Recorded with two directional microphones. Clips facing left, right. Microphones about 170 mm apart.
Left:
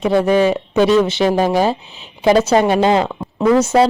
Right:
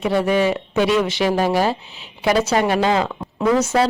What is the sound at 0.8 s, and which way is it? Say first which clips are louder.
Speech: left 5 dB; 35° left (ahead or behind).